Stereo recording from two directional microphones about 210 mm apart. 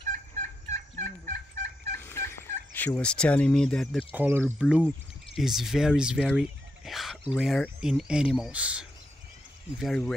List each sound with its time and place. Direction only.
0.1 s fowl: 40° right (ahead or behind)
2.0 s fowl: 10° left (ahead or behind); by 8.8 s 5° right (ahead or behind)
9.8 s speech: centre (ahead or behind)